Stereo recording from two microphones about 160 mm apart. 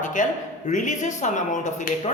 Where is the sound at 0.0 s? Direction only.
50° left (ahead or behind).